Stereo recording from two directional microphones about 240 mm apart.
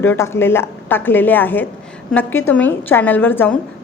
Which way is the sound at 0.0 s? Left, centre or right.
Centre.